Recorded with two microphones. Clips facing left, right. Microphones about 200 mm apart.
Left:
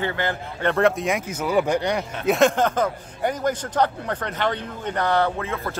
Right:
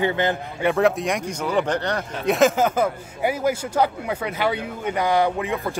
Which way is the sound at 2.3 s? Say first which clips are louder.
Right 1 dB; 5° right (ahead or behind).